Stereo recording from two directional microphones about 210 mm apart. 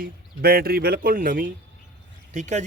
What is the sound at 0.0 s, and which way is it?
A man's voice, 45° right (ahead or behind).